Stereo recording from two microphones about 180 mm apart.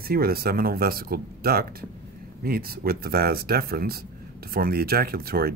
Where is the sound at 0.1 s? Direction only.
60° right (ahead or behind).